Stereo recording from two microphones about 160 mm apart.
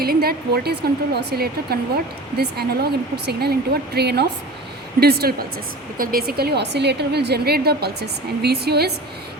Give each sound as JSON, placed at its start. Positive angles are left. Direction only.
{"t": 0.0, "sound": "a woman's voice", "side_deg": -70}
{"t": 4.9, "sound": "a woman's voice", "side_deg": -75}